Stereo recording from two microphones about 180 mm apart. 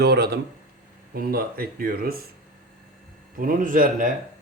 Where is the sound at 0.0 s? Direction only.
65° right (ahead or behind).